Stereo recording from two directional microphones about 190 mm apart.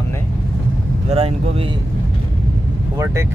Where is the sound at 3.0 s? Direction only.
15° right (ahead or behind).